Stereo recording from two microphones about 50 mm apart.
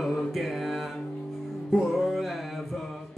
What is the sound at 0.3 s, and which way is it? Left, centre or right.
Mantra, centre.